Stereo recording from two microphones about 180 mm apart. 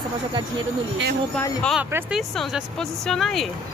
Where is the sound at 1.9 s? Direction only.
10° right (ahead or behind).